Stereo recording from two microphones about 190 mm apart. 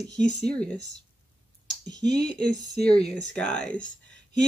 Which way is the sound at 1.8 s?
20° right (ahead or behind).